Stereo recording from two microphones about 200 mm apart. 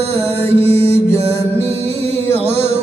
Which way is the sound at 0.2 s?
30° right (ahead or behind).